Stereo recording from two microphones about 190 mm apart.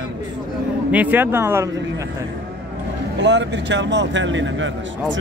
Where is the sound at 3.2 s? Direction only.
65° right (ahead or behind).